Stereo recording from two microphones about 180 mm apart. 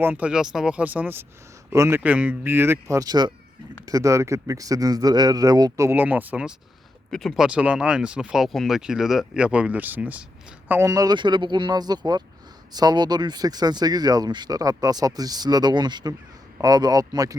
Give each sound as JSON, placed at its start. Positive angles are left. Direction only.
{"t": 0.0, "sound": "speech", "side_deg": -10}